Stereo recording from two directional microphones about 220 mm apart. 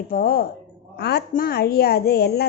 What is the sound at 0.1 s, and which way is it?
A woman's voice, 40° left (ahead or behind).